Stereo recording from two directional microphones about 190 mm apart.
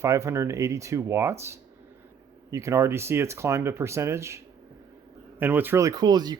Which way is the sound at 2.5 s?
15° right (ahead or behind).